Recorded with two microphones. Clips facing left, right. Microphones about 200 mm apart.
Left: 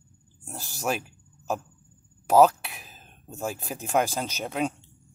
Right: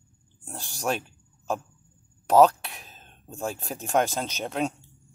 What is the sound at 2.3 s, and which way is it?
Speech, 5° left (ahead or behind).